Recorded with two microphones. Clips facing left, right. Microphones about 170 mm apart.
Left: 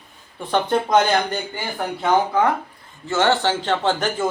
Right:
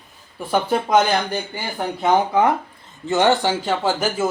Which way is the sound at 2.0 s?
20° right (ahead or behind).